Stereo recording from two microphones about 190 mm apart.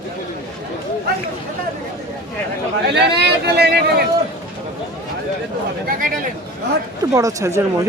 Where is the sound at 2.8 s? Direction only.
60° right (ahead or behind).